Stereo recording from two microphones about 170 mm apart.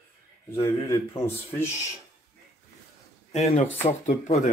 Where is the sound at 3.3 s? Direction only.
35° left (ahead or behind).